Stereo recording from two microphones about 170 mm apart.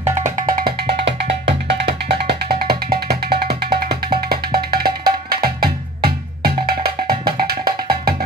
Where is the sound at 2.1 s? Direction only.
75° right (ahead or behind).